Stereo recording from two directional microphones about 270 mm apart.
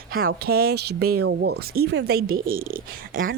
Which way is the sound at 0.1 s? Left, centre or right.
Right.